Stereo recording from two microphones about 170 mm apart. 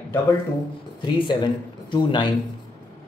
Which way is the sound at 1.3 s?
25° left (ahead or behind).